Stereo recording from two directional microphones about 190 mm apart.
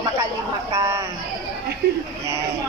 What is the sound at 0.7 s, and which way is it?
Speech, 15° right (ahead or behind).